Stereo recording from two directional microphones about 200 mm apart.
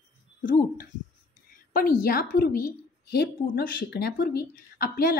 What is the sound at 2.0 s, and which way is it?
A woman's voice, 50° left (ahead or behind).